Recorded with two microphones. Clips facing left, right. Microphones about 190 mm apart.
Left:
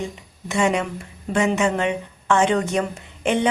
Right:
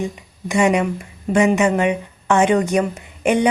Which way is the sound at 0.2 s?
15° right (ahead or behind).